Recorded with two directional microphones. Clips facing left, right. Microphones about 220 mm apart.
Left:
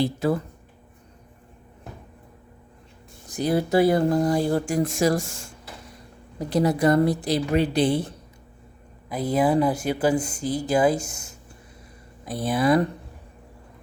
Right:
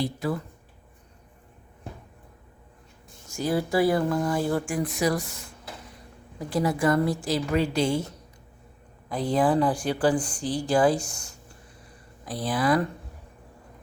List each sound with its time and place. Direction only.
0.0 s speech: 25° left (ahead or behind)
3.3 s speech: 20° left (ahead or behind)
4.0 s a woman's voice: 35° left (ahead or behind)
6.6 s a woman's voice: 40° left (ahead or behind)
7.3 s speech: 20° left (ahead or behind)
7.9 s a woman's voice: 35° left (ahead or behind)
9.2 s speech: 20° left (ahead or behind)